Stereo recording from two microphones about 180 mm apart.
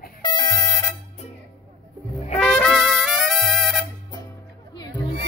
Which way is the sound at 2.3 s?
5° left (ahead or behind).